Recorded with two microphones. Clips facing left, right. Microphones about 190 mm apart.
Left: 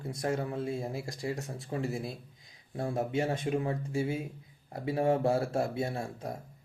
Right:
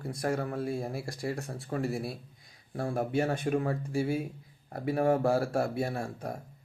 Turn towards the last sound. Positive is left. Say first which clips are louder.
# right 1 dB
turn(degrees=25)  # may be behind; listen again after turning